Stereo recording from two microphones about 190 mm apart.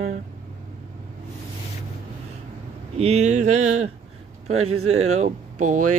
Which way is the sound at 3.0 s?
35° right (ahead or behind).